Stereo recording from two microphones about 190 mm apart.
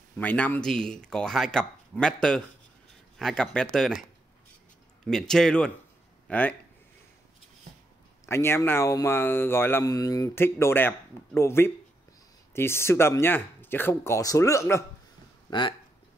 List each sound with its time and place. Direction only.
0.2 s speech: 10° left (ahead or behind)
5.0 s speech: 5° left (ahead or behind)
8.3 s speech: 15° left (ahead or behind)